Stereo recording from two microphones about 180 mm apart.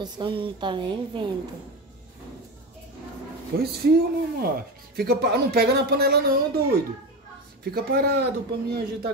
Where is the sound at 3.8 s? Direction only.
60° right (ahead or behind).